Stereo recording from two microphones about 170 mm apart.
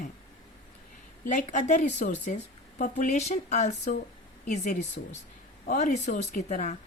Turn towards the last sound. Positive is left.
turn(degrees=45)  # may be behind; listen again after turning